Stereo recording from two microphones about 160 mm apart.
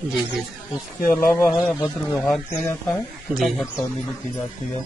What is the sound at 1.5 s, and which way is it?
Speech, 5° right (ahead or behind).